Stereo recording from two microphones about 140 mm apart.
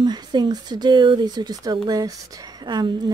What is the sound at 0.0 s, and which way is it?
Speech, 30° right (ahead or behind).